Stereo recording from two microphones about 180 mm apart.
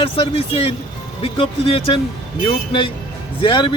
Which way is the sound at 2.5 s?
30° left (ahead or behind).